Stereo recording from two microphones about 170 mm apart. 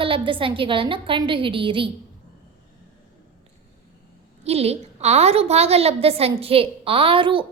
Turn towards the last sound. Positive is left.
turn(degrees=-30)  # may be behind; listen again after turning